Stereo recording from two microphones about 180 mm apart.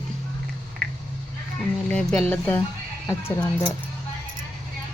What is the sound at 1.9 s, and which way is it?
Speech, 5° left (ahead or behind).